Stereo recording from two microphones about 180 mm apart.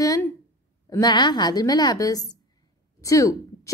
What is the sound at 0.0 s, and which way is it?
A woman's voice, 20° left (ahead or behind).